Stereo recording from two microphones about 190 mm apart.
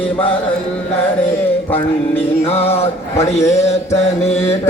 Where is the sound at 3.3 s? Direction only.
35° left (ahead or behind).